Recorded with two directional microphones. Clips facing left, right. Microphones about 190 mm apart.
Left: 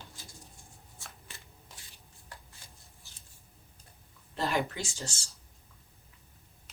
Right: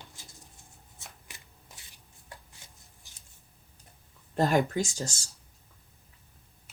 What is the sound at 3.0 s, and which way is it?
Scissors, 15° right (ahead or behind).